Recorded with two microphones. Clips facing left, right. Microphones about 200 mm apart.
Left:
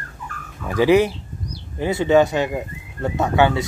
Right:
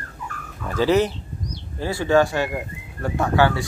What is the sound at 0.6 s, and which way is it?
Speech, 15° left (ahead or behind).